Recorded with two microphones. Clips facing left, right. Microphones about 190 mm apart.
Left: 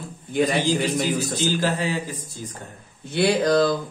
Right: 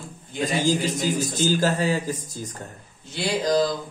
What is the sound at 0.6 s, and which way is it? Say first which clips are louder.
A man's voice: left 1 dB; 45° right (ahead or behind).